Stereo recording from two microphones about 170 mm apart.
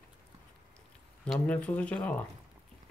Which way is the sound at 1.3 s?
10° left (ahead or behind).